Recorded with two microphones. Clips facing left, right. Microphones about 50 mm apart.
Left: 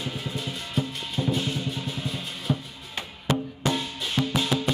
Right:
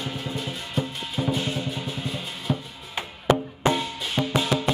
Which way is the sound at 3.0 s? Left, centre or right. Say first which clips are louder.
Right 5 dB; centre.